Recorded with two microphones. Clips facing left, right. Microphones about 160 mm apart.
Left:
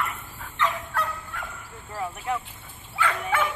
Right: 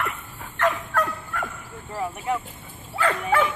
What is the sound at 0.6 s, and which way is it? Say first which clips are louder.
Fowl: right 4 dB; 50° right (ahead or behind).